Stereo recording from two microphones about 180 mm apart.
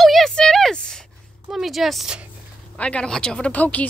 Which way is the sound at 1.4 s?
Centre (ahead or behind).